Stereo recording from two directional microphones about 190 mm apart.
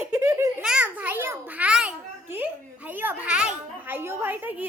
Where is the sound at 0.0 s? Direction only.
10° right (ahead or behind).